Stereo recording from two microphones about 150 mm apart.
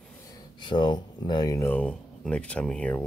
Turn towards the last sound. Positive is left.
turn(degrees=5)  # may be behind; listen again after turning